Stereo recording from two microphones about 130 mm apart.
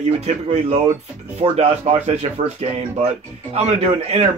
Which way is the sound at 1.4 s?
55° right (ahead or behind).